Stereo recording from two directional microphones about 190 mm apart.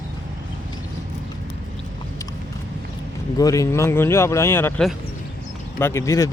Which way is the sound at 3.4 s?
15° left (ahead or behind).